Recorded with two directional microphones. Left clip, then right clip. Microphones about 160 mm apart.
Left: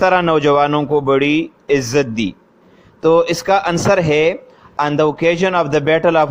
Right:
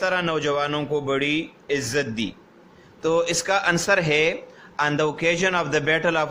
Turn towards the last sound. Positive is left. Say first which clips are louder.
# left 8 dB
turn(degrees=40)  # may be behind; listen again after turning